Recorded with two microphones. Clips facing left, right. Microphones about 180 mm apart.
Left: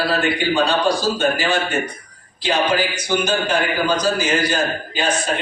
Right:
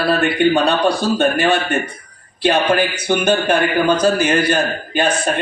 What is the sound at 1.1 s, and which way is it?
A man's voice, 60° right (ahead or behind).